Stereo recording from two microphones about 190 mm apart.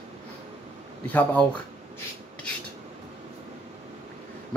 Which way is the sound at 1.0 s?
10° left (ahead or behind).